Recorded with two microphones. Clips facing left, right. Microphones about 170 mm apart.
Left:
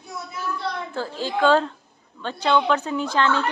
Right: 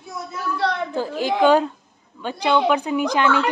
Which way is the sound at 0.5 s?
75° right (ahead or behind).